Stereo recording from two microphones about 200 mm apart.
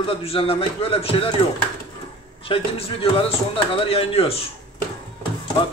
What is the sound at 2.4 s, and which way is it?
Speech, 30° left (ahead or behind).